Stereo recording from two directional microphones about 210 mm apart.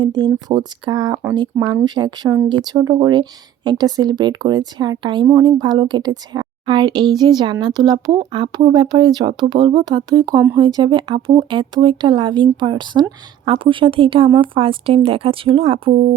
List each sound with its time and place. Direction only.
0.2 s speech: 20° right (ahead or behind)